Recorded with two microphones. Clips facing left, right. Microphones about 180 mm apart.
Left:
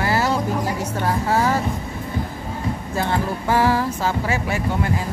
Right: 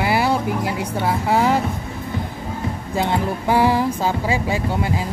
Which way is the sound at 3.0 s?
15° right (ahead or behind).